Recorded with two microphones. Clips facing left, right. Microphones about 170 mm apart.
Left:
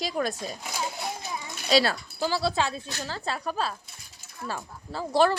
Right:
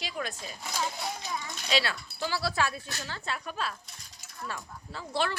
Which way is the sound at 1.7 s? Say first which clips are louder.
Left 7 dB; 40° left (ahead or behind).